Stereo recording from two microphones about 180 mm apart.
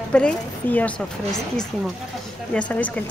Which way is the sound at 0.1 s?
5° left (ahead or behind).